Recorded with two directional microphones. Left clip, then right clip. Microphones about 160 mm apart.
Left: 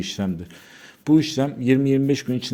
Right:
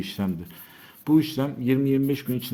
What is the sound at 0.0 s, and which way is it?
Speech, 20° left (ahead or behind).